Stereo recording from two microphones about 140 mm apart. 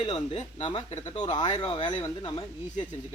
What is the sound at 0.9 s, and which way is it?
Speech, 50° left (ahead or behind).